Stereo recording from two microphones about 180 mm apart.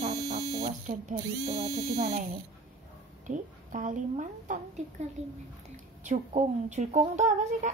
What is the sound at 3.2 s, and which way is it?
A woman's voice, 45° right (ahead or behind).